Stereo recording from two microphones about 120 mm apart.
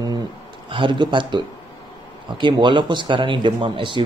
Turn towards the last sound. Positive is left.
turn(degrees=-45)  # may be behind; listen again after turning